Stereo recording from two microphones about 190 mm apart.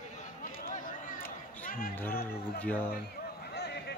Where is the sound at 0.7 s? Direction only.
45° left (ahead or behind).